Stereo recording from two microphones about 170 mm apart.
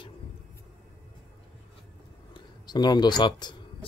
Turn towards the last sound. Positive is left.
turn(degrees=25)  # may be behind; listen again after turning